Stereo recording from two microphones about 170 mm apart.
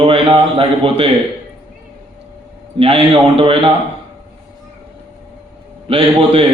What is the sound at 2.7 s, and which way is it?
Speech, 30° right (ahead or behind).